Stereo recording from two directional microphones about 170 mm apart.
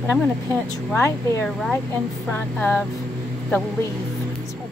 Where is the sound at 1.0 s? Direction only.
15° left (ahead or behind).